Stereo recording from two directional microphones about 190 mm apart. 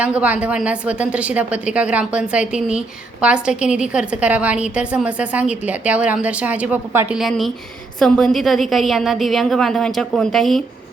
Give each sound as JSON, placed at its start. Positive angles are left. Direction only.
{"t": 0.0, "sound": "a woman's voice", "side_deg": -5}
{"t": 7.2, "sound": "a woman's voice", "side_deg": 0}